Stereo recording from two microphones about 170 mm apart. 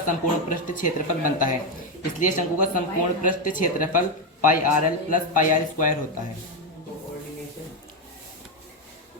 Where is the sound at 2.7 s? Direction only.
50° left (ahead or behind).